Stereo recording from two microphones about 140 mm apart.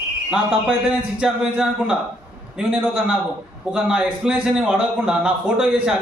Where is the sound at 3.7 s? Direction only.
10° right (ahead or behind).